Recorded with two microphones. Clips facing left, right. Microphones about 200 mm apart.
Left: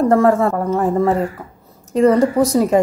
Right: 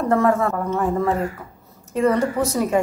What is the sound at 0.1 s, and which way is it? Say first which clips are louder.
Speech: left 5 dB; 35° left (ahead or behind).